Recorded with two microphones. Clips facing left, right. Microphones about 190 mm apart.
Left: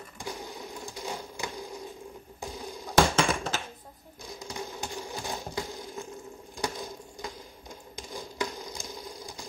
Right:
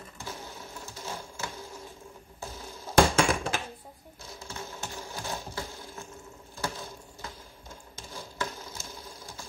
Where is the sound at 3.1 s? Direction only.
10° right (ahead or behind).